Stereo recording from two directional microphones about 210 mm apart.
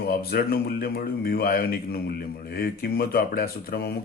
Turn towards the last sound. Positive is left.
turn(degrees=50)  # may be behind; listen again after turning